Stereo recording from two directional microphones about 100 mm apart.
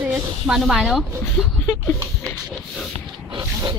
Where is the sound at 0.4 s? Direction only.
5° right (ahead or behind).